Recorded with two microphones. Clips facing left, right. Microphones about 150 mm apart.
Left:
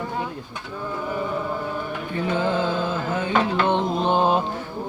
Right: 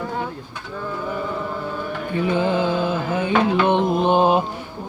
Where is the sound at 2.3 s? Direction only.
15° right (ahead or behind).